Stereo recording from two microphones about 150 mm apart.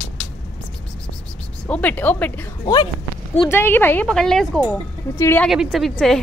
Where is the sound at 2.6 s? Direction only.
30° left (ahead or behind).